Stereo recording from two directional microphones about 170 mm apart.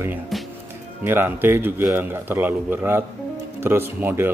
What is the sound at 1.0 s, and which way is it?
Speech, 10° right (ahead or behind).